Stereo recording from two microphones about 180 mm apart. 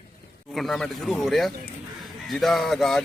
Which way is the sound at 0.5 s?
Centre (ahead or behind).